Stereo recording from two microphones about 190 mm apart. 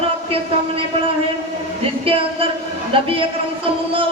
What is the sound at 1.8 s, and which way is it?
Music, 30° right (ahead or behind).